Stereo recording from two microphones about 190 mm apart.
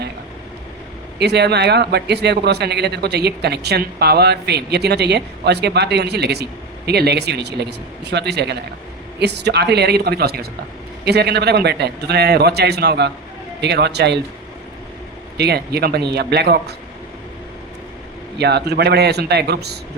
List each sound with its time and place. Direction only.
1.2 s a man's voice: 60° right (ahead or behind)
15.4 s a man's voice: 60° right (ahead or behind)
18.3 s a man's voice: 60° right (ahead or behind)